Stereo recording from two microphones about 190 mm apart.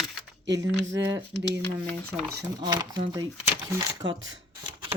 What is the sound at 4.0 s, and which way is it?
Speech, 80° right.